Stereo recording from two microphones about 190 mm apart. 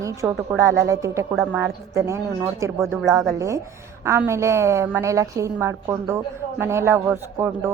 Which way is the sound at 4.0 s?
15° right (ahead or behind).